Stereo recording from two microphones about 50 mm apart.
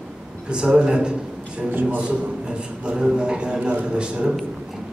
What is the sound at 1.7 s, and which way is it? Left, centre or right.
Speech, right.